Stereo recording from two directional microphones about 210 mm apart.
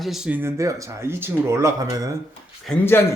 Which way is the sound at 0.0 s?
Centre (ahead or behind).